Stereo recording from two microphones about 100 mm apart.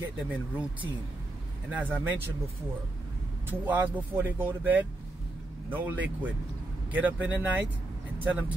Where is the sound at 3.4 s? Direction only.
15° right (ahead or behind).